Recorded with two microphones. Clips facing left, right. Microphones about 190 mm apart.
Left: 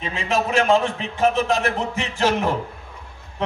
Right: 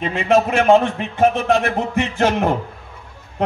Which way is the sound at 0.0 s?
60° right (ahead or behind).